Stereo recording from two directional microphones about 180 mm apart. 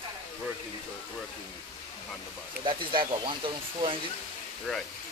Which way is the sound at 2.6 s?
25° right (ahead or behind).